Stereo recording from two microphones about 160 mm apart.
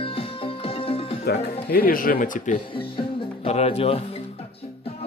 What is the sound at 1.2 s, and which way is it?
Speech, 80° left.